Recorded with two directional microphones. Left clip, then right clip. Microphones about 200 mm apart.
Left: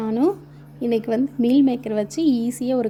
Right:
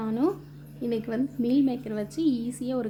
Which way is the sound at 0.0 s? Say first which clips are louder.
Left 6 dB; 30° left (ahead or behind).